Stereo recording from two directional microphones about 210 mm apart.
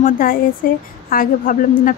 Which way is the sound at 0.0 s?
40° left (ahead or behind).